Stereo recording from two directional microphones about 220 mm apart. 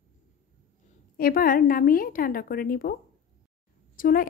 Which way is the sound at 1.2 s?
40° left (ahead or behind).